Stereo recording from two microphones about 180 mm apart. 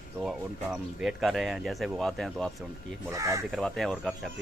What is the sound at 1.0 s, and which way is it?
Speech, centre (ahead or behind).